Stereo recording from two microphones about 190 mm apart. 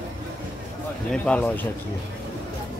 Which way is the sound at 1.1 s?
5° left (ahead or behind).